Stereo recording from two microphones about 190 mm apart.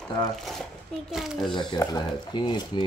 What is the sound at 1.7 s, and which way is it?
Speech, 20° left (ahead or behind).